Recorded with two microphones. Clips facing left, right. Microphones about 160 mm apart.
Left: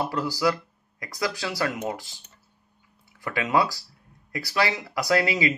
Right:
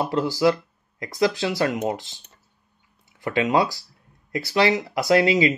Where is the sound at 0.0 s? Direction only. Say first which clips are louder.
Right 5 dB; 20° right (ahead or behind).